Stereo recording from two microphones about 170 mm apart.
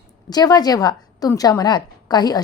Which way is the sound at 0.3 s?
25° left (ahead or behind).